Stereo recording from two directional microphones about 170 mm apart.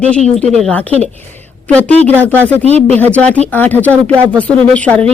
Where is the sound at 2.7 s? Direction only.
40° right (ahead or behind).